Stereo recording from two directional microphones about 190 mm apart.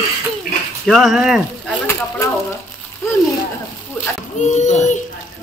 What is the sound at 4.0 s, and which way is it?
Speech, 10° left (ahead or behind).